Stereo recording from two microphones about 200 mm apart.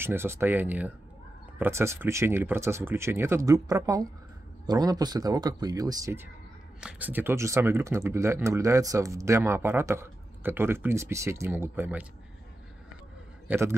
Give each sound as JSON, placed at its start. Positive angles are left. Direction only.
{"t": 0.0, "sound": "speech", "side_deg": -10}
{"t": 6.8, "sound": "speech", "side_deg": -5}
{"t": 13.5, "sound": "a man's voice", "side_deg": -10}